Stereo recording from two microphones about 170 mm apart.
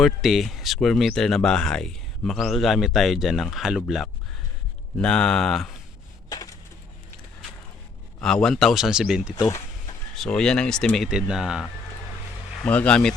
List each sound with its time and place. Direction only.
0.0 s speech: centre (ahead or behind)
6.2 s typewriter: 20° left (ahead or behind)
8.2 s speech: 5° left (ahead or behind)
9.3 s speech: 15° left (ahead or behind)
10.2 s speech: 5° left (ahead or behind)
12.6 s speech: 10° left (ahead or behind)